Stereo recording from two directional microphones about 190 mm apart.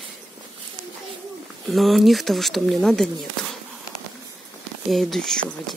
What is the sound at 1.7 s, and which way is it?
Speech, centre (ahead or behind).